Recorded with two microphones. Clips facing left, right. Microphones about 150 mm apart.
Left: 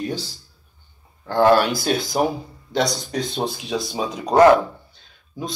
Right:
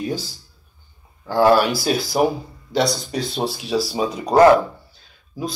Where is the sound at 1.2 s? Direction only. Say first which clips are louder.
Right 1 dB; 5° right (ahead or behind).